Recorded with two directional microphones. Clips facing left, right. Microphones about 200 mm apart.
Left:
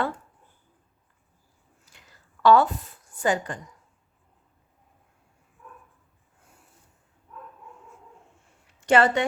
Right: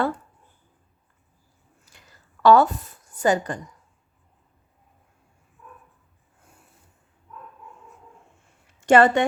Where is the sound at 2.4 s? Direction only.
45° right (ahead or behind).